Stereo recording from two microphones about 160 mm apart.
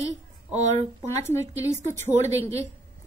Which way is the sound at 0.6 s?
45° right (ahead or behind).